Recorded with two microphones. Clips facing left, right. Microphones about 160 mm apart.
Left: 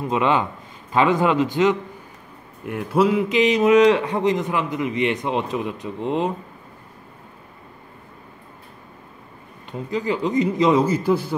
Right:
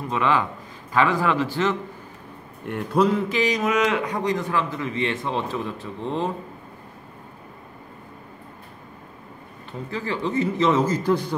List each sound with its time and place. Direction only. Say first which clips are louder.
0.0 s a man's voice: left 2 dB; 20° left (ahead or behind)
2.6 s a man's voice: left 2 dB; 5° left (ahead or behind)
3.3 s a man's voice: left 6 dB; 25° left (ahead or behind)
9.7 s a man's voice: left 5 dB; 15° left (ahead or behind)